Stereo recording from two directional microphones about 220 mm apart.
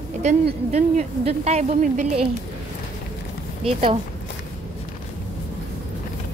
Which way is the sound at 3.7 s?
20° right (ahead or behind).